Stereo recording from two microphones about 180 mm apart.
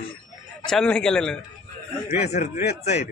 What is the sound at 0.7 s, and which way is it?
Speech, 5° left (ahead or behind).